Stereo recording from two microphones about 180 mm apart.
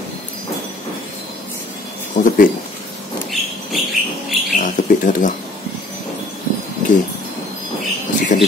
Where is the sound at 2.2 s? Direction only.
40° left (ahead or behind).